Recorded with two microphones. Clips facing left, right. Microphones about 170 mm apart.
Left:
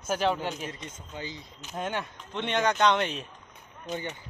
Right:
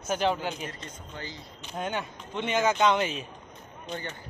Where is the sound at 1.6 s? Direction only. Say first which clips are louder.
Even; centre (ahead or behind).